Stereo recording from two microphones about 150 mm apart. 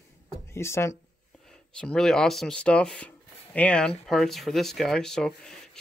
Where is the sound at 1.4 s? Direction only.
5° left (ahead or behind).